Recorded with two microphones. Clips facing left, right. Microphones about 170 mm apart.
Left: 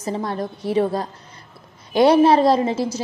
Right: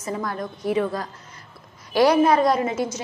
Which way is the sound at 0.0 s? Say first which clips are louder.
Left 3 dB; 30° left (ahead or behind).